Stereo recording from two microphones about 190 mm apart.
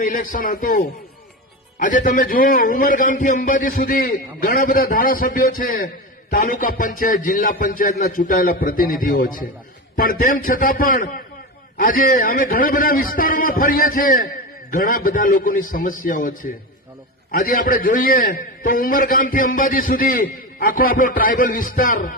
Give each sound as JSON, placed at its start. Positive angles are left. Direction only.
{"t": 0.0, "sound": "a man's voice", "side_deg": 45}
{"t": 17.3, "sound": "a man's voice", "side_deg": 45}